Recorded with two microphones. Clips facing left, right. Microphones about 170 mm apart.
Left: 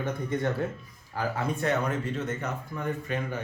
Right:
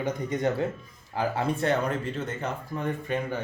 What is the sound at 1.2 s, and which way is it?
Speech, 30° right (ahead or behind).